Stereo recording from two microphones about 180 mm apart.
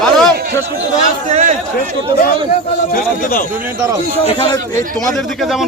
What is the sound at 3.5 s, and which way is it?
Speech, 15° right (ahead or behind).